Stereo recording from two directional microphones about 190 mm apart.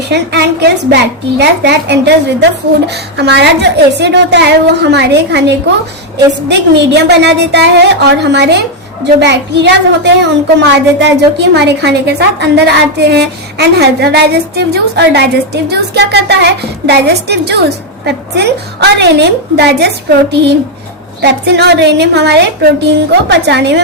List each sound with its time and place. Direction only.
0.1 s a woman's voice: 60° right (ahead or behind)